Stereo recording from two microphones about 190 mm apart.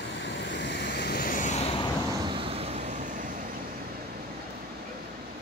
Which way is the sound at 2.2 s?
30° right (ahead or behind).